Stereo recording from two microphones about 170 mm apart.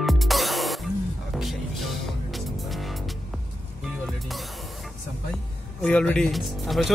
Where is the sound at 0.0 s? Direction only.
Centre (ahead or behind).